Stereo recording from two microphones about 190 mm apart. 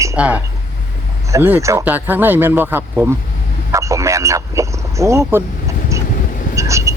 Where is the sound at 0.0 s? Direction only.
10° right (ahead or behind).